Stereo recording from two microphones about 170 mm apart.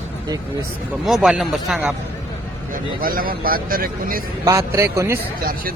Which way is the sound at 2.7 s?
55° right (ahead or behind).